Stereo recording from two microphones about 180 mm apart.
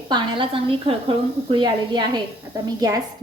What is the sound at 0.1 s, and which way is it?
A woman's voice, 30° right (ahead or behind).